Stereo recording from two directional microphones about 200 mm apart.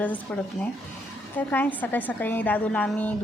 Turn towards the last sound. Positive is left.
turn(degrees=5)  # may be behind; listen again after turning